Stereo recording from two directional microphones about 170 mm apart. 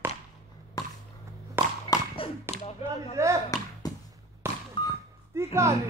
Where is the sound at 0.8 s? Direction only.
20° left (ahead or behind).